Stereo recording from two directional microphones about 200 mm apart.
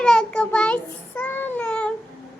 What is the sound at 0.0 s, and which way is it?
Child singing, 5° left (ahead or behind).